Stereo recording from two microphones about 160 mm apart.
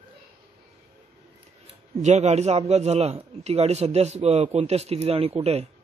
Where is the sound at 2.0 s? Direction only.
45° right (ahead or behind).